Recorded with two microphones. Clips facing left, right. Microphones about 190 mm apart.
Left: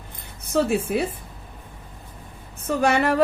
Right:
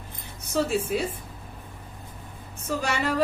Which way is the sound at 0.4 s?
55° left (ahead or behind).